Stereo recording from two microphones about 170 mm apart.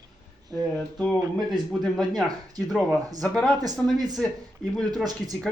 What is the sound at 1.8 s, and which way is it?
Speech, centre (ahead or behind).